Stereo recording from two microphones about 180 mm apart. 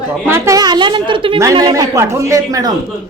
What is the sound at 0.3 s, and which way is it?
Speech, 15° right (ahead or behind).